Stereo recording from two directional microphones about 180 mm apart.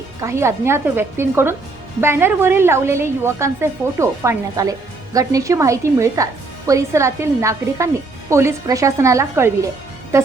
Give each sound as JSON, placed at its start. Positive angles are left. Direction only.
{"t": 0.2, "sound": "a woman's voice", "side_deg": -15}